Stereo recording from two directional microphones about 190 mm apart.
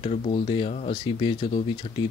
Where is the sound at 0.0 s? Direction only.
35° left (ahead or behind).